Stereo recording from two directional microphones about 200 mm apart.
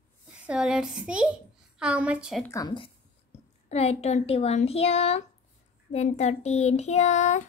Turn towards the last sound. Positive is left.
turn(degrees=35)  # may be behind; listen again after turning